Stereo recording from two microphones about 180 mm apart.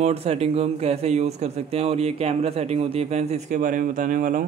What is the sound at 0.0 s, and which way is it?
A man's voice, 35° right (ahead or behind).